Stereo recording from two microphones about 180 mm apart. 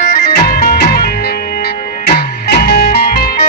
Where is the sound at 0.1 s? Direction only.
55° left (ahead or behind).